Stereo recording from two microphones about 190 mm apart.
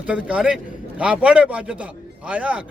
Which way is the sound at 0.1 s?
5° right (ahead or behind).